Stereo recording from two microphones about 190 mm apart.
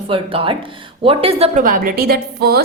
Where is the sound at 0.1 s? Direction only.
30° right (ahead or behind).